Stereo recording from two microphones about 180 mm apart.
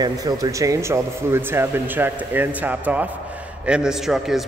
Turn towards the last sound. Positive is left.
turn(degrees=0)  # may be behind; listen again after turning